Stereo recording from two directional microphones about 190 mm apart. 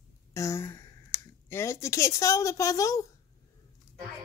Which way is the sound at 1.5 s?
15° left (ahead or behind).